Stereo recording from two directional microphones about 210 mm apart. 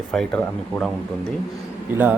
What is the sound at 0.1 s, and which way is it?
Speech, 5° left (ahead or behind).